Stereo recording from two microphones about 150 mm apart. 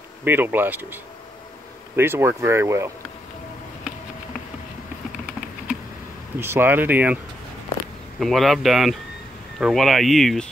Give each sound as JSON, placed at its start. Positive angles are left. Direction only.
{"t": 0.2, "sound": "speech", "side_deg": -15}
{"t": 2.0, "sound": "speech", "side_deg": -15}
{"t": 6.4, "sound": "speech", "side_deg": -15}
{"t": 8.2, "sound": "speech", "side_deg": 0}